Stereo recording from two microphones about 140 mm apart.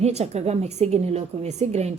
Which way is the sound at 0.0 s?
50° right (ahead or behind).